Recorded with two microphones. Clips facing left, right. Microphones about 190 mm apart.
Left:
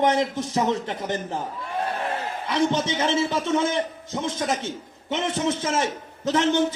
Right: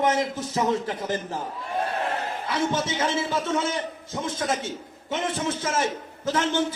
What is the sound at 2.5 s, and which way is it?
A man's voice, 25° left (ahead or behind).